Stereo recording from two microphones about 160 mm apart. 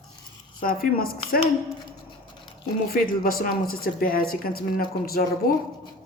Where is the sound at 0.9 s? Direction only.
65° left (ahead or behind).